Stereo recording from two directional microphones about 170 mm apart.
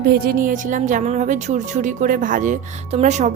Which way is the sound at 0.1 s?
60° right (ahead or behind).